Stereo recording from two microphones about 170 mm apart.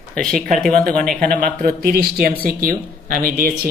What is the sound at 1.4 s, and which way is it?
Speech, 55° right (ahead or behind).